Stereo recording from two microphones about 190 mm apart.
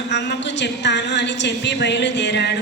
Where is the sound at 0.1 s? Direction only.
65° left (ahead or behind).